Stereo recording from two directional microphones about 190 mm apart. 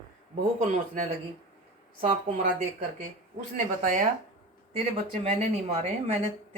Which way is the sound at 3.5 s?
40° right (ahead or behind).